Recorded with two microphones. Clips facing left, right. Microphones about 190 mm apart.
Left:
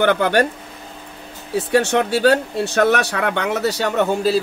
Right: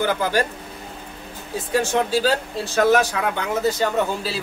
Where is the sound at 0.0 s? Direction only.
70° left (ahead or behind).